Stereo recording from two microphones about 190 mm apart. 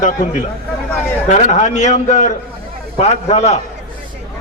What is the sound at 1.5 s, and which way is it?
A man's voice, 40° left (ahead or behind).